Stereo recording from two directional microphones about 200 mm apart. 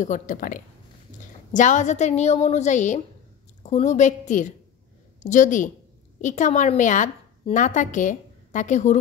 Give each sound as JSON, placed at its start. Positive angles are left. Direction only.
{"t": 0.0, "sound": "a woman's voice", "side_deg": 40}